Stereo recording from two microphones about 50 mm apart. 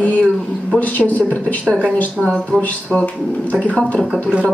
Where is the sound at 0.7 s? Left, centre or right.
Left.